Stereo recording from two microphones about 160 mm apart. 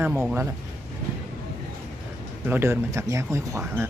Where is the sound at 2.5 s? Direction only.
15° right (ahead or behind).